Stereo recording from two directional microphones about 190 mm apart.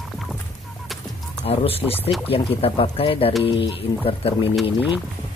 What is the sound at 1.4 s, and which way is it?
Speech, 30° left (ahead or behind).